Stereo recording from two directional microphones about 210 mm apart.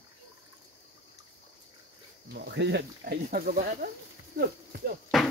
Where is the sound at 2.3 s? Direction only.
50° right (ahead or behind).